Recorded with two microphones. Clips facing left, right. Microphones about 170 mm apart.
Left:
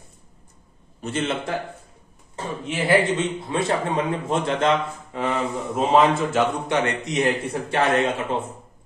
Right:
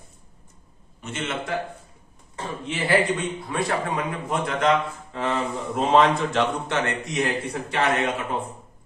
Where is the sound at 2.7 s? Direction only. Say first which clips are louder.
Left 3 dB; 25° left (ahead or behind).